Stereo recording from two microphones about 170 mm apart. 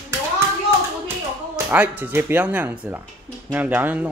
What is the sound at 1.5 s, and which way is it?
Music, 10° right (ahead or behind).